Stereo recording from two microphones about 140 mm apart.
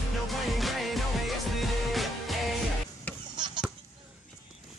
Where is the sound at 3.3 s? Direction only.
35° right (ahead or behind).